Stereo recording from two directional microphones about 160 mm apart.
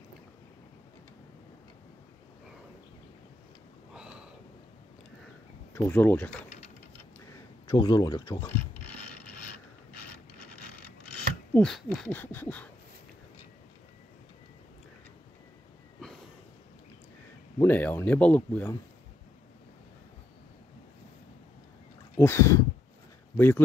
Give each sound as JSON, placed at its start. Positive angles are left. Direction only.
{"t": 3.9, "sound": "a sound", "side_deg": -5}
{"t": 5.8, "sound": "speech", "side_deg": 15}
{"t": 7.2, "sound": "a sound", "side_deg": 25}
{"t": 11.5, "sound": "speech", "side_deg": 5}
{"t": 17.6, "sound": "speech", "side_deg": 10}
{"t": 22.1, "sound": "speech", "side_deg": 15}